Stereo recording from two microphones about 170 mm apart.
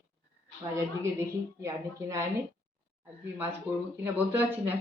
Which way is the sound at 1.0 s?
15° right (ahead or behind).